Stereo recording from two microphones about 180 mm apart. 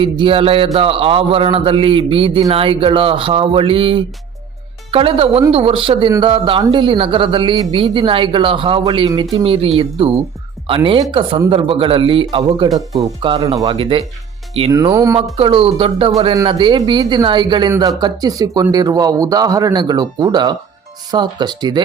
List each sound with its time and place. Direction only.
0.0 s a man's voice: 30° right (ahead or behind)
14.9 s speech: 20° right (ahead or behind)
15.4 s speech: 30° right (ahead or behind)